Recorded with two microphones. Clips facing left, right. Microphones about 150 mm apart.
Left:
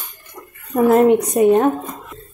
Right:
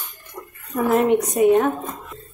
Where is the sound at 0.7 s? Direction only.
40° left (ahead or behind).